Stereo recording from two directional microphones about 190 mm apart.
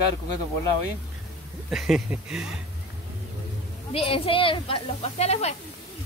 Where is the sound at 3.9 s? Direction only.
30° left (ahead or behind).